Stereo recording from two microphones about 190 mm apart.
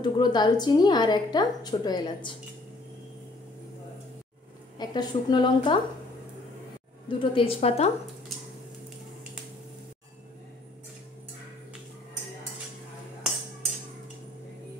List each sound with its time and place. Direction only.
0.0 s a woman's voice: 20° left (ahead or behind)
4.7 s a woman's voice: 20° left (ahead or behind)
7.1 s a woman's voice: 25° left (ahead or behind)